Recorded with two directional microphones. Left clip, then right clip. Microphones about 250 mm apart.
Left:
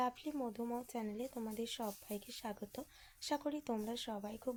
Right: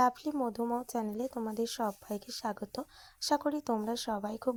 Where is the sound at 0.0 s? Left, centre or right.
Right.